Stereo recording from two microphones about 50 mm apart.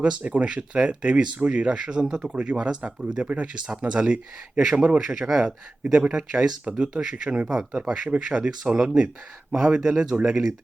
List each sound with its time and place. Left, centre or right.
0.0 s speech: right
5.8 s speech: right